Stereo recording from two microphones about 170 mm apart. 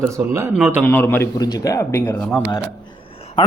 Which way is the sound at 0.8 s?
10° left (ahead or behind).